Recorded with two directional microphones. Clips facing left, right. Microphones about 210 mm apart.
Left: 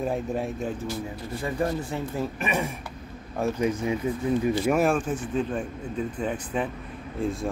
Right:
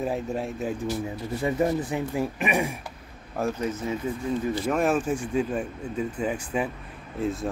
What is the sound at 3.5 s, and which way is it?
Speech, 10° left (ahead or behind).